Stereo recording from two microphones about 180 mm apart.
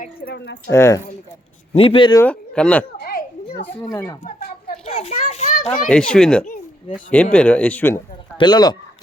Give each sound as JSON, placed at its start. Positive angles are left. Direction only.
{"t": 0.3, "sound": "speech", "side_deg": 70}
{"t": 0.7, "sound": "speech", "side_deg": 15}
{"t": 1.7, "sound": "speech", "side_deg": 30}
{"t": 2.2, "sound": "a man's voice", "side_deg": 5}
{"t": 4.2, "sound": "children playing", "side_deg": 45}
{"t": 5.9, "sound": "speech", "side_deg": 5}
{"t": 8.4, "sound": "speech", "side_deg": 25}